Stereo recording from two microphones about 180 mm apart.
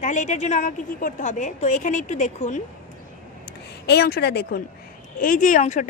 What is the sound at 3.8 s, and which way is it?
Speech, 60° left (ahead or behind).